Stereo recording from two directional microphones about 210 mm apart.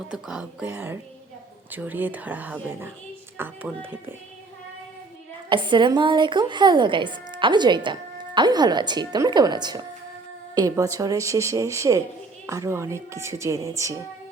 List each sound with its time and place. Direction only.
0.1 s speech: 5° right (ahead or behind)
5.5 s speech: 20° right (ahead or behind)